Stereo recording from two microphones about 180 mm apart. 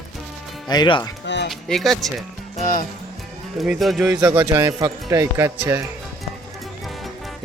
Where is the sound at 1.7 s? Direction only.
Centre (ahead or behind).